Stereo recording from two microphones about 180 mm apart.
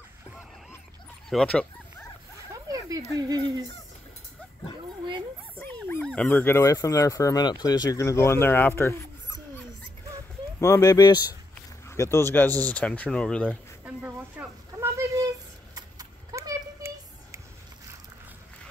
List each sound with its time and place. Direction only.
1.3 s speech: 5° left (ahead or behind)
2.5 s a sound: 20° right (ahead or behind)
3.2 s speech: 20° right (ahead or behind)
5.6 s speech: 10° left (ahead or behind)
10.6 s speech: 15° left (ahead or behind)
13.8 s a sound: 10° right (ahead or behind)